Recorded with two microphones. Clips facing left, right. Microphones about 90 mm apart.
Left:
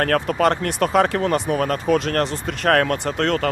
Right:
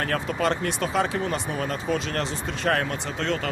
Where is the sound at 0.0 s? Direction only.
55° left (ahead or behind).